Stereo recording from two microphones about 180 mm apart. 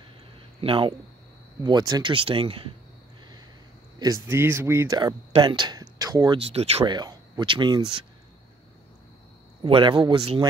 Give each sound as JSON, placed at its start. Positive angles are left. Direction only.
{"t": 0.6, "sound": "speech", "side_deg": -30}
{"t": 4.0, "sound": "speech", "side_deg": -15}
{"t": 6.4, "sound": "speech", "side_deg": -35}
{"t": 7.0, "sound": "speech", "side_deg": -25}
{"t": 9.6, "sound": "speech", "side_deg": -25}